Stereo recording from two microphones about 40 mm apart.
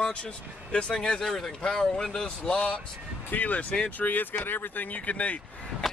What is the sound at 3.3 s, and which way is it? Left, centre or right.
Speech, left.